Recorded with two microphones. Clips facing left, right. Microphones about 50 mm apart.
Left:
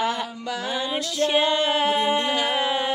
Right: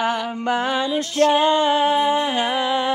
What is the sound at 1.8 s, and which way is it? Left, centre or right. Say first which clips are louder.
Humming: right 4 dB; left.